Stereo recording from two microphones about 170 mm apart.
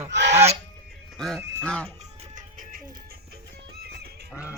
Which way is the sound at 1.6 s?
5° left (ahead or behind).